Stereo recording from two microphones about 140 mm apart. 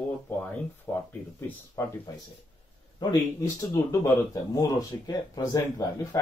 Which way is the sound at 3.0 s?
30° left (ahead or behind).